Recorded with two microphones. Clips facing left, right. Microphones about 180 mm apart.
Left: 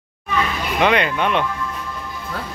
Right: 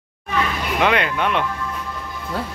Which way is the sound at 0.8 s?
Centre (ahead or behind).